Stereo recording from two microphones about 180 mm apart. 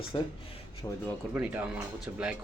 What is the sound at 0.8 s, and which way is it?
Speech, 20° left (ahead or behind).